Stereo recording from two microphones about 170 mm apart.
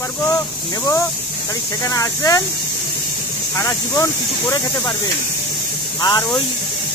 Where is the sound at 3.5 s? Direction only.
20° left (ahead or behind).